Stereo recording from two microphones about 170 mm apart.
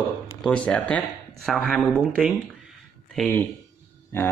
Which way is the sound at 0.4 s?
5° left (ahead or behind).